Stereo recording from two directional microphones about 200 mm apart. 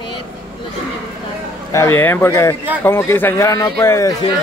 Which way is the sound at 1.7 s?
10° left (ahead or behind).